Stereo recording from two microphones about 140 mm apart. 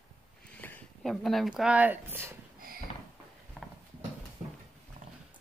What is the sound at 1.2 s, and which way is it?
Speech, centre (ahead or behind).